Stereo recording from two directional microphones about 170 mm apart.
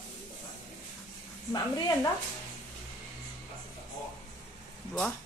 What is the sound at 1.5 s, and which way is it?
Speech, 25° left (ahead or behind).